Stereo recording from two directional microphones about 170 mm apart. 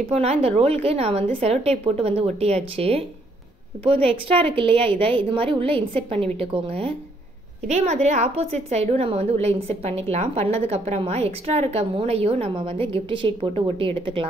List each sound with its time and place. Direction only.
0.1 s a woman's voice: 35° right (ahead or behind)